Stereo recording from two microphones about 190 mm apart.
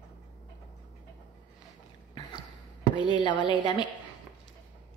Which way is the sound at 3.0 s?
25° left (ahead or behind).